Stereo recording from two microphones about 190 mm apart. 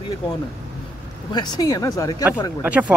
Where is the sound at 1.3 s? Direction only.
20° left (ahead or behind).